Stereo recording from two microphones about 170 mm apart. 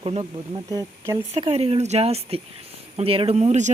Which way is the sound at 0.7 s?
20° right (ahead or behind).